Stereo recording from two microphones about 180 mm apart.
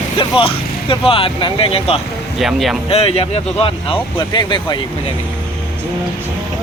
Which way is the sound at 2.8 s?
35° left (ahead or behind).